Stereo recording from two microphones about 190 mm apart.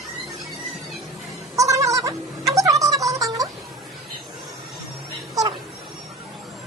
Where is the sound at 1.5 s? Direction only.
15° right (ahead or behind).